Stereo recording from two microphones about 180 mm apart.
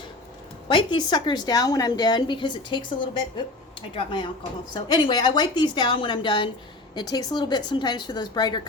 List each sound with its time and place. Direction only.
0.7 s a woman's voice: 25° left (ahead or behind)